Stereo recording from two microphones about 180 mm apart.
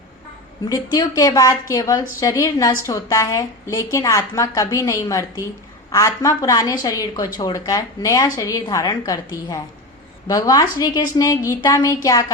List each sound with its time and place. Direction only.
0.7 s a woman's voice: 20° left (ahead or behind)